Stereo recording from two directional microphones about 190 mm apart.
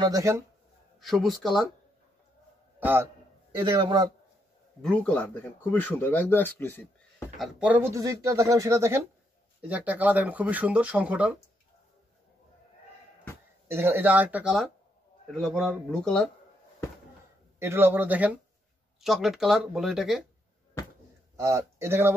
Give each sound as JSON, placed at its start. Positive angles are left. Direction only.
{"t": 0.0, "sound": "speech", "side_deg": -15}
{"t": 0.9, "sound": "speech", "side_deg": 0}
{"t": 2.8, "sound": "speech", "side_deg": -10}
{"t": 3.5, "sound": "a man's voice", "side_deg": -25}
{"t": 4.8, "sound": "speech", "side_deg": 5}
{"t": 7.3, "sound": "speech", "side_deg": 0}
{"t": 13.7, "sound": "speech", "side_deg": -10}
{"t": 17.6, "sound": "speech", "side_deg": -10}
{"t": 21.4, "sound": "speech", "side_deg": -15}